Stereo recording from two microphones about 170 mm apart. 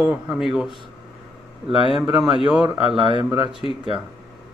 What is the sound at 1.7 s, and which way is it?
Speech, 30° right (ahead or behind).